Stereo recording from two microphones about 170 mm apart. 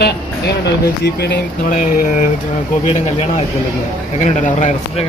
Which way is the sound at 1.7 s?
55° left (ahead or behind).